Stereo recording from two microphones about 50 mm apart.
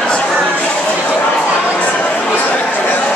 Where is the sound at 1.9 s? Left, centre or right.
Centre.